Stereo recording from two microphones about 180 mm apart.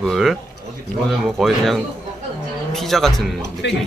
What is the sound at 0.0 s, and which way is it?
Speech, centre (ahead or behind).